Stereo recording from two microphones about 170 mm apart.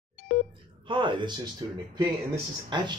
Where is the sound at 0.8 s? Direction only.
30° right (ahead or behind).